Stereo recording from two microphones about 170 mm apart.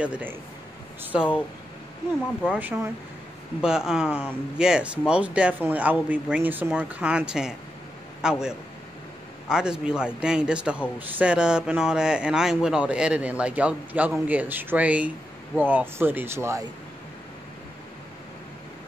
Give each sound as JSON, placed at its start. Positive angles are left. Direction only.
{"t": 0.0, "sound": "speech", "side_deg": -10}
{"t": 2.5, "sound": "a man's voice", "side_deg": -10}